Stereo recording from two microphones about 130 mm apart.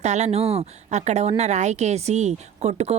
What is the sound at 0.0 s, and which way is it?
A woman's voice, 60° right (ahead or behind).